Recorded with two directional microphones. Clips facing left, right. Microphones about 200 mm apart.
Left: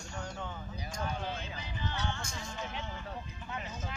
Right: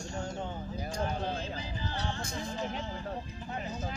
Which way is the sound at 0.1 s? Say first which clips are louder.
Right 3 dB; 30° right (ahead or behind).